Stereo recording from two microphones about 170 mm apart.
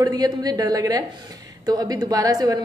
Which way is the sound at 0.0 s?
20° right (ahead or behind).